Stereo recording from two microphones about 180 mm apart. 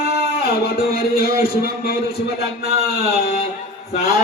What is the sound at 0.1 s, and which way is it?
Speech, 60° left (ahead or behind).